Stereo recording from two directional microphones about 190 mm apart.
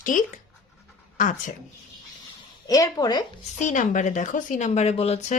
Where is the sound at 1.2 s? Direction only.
40° left (ahead or behind).